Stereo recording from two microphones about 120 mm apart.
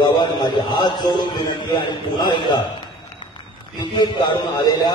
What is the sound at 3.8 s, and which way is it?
A man's voice, 40° left (ahead or behind).